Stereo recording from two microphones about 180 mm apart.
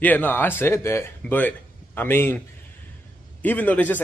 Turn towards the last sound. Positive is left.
turn(degrees=10)  # may be behind; listen again after turning